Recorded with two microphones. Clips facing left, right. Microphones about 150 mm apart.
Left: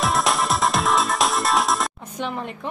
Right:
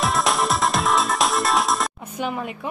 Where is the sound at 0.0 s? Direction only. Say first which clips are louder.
Even; centre (ahead or behind).